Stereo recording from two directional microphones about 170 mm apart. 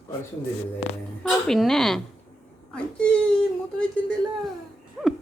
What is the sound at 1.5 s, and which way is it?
Speech, centre (ahead or behind).